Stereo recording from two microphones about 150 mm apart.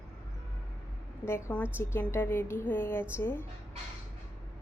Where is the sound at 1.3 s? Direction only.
15° left (ahead or behind).